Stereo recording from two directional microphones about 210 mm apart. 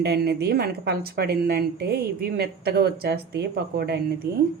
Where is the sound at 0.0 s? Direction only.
50° right (ahead or behind).